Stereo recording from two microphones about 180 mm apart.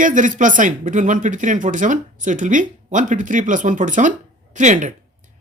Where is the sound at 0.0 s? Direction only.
45° right (ahead or behind).